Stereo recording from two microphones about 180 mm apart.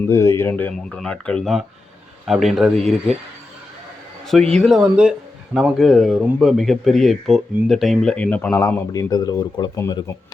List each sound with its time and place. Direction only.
0.1 s speech: 15° left (ahead or behind); by 3.2 s centre (ahead or behind)
4.3 s speech: 5° left (ahead or behind)